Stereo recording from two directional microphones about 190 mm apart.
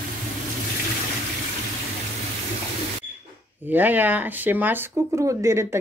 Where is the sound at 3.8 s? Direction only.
10° right (ahead or behind).